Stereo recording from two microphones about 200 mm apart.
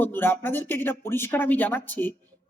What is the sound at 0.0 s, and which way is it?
Speech, 10° left (ahead or behind).